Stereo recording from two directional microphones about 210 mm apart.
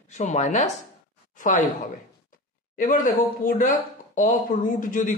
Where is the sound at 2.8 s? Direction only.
40° left (ahead or behind).